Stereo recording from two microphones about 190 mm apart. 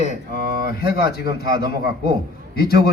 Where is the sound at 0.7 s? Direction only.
55° left (ahead or behind).